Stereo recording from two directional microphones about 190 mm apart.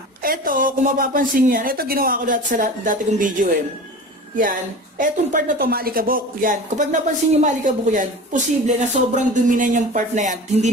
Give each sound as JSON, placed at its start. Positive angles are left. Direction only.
{"t": 0.2, "sound": "a woman's voice", "side_deg": -50}